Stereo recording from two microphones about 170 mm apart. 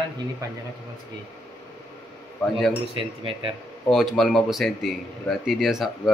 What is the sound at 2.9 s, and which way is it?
Speech, 30° right (ahead or behind).